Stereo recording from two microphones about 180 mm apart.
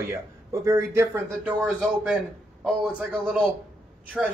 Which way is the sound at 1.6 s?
5° right (ahead or behind).